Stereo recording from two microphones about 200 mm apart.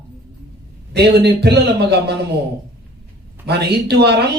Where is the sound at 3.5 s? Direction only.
55° right (ahead or behind).